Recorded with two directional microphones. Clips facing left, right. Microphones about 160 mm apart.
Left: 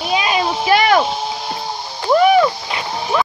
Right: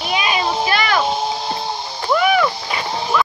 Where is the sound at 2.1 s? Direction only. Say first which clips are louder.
Left 5 dB; 35° left (ahead or behind).